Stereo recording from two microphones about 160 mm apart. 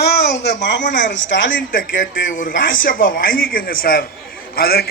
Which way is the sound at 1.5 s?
60° left (ahead or behind).